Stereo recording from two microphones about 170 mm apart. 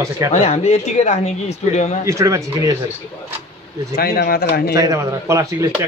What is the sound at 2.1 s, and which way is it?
Speech, 20° right (ahead or behind).